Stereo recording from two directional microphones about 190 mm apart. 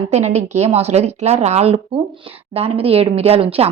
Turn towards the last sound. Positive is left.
turn(degrees=-30)  # may be behind; listen again after turning